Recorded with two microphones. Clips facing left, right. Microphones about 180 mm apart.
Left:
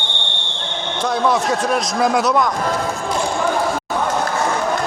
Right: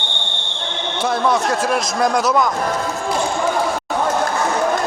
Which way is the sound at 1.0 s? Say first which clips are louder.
Even; centre (ahead or behind).